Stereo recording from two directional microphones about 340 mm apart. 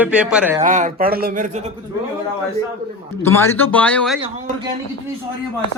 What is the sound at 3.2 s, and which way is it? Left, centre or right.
Speech, centre.